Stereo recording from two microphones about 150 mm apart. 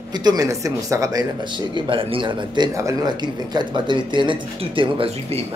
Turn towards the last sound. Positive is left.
turn(degrees=-35)  # may be behind; listen again after turning